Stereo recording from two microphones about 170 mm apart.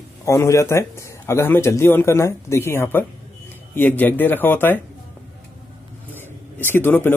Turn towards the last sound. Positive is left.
turn(degrees=15)  # may be behind; listen again after turning